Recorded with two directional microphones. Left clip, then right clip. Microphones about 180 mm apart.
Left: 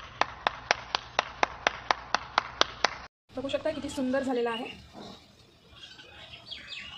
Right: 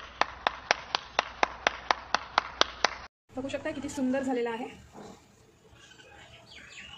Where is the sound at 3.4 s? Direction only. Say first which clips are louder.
Left 4 dB; 10° right (ahead or behind).